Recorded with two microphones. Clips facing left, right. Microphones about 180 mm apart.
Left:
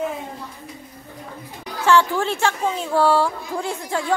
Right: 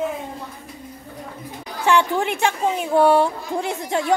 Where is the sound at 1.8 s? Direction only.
15° right (ahead or behind).